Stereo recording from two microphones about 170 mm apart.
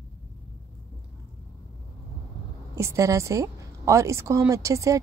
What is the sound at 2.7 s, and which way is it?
A woman's voice, 15° right (ahead or behind).